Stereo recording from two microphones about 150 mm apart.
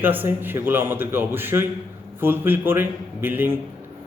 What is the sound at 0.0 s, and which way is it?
A man's voice, 15° right (ahead or behind).